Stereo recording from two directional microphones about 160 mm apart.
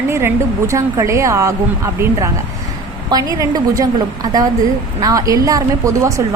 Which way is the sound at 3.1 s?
20° right (ahead or behind).